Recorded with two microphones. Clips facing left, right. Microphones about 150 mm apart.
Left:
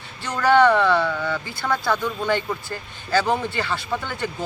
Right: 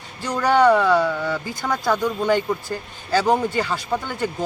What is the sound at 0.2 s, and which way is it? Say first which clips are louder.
A man's voice: even; 10° right (ahead or behind).